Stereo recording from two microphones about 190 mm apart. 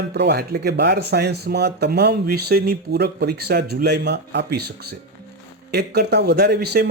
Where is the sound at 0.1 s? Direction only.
60° right (ahead or behind).